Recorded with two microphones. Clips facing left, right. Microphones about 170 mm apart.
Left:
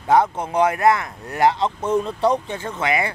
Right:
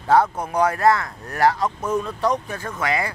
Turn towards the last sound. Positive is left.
turn(degrees=25)  # may be behind; listen again after turning